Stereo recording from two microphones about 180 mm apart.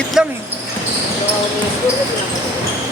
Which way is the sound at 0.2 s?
5° right (ahead or behind).